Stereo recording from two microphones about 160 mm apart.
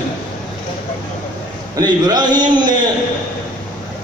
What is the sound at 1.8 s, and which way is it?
Speech, 25° right (ahead or behind).